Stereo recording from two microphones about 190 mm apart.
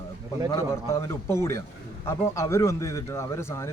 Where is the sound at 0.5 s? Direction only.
15° left (ahead or behind).